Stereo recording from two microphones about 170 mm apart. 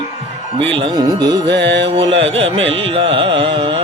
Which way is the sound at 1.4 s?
90° right.